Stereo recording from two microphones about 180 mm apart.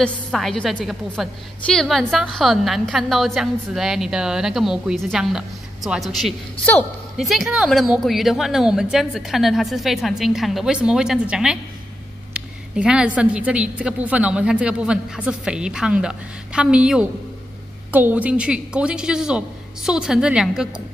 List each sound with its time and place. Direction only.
0.0 s a woman's voice: 5° left (ahead or behind)
7.2 s a woman's voice: centre (ahead or behind)